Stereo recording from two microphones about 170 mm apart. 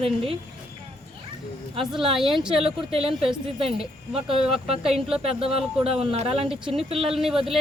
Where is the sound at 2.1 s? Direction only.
Centre (ahead or behind).